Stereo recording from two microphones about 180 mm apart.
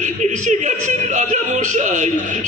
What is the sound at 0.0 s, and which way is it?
A man's voice, 40° right (ahead or behind).